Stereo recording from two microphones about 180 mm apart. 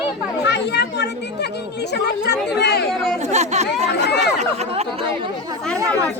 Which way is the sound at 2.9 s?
Centre (ahead or behind).